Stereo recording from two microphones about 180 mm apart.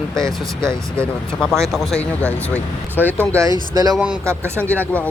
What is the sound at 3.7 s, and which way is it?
Speech, 20° right (ahead or behind).